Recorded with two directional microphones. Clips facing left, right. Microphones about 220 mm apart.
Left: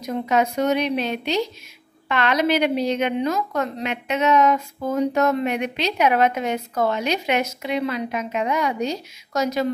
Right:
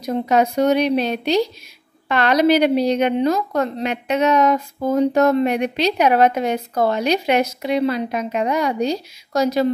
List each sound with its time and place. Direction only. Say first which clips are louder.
0.0 s a woman's voice: right 3 dB; 35° right (ahead or behind)